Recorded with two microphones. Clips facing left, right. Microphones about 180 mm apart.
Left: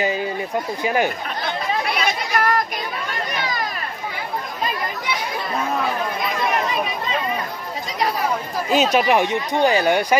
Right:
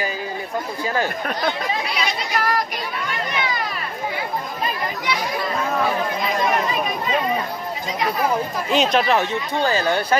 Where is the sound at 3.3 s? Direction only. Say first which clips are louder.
Even; 40° left (ahead or behind).